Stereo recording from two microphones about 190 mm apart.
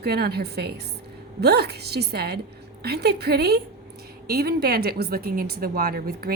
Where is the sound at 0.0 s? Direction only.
55° right (ahead or behind).